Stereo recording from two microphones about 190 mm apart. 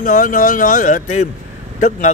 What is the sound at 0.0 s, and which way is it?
Speech, 45° left (ahead or behind).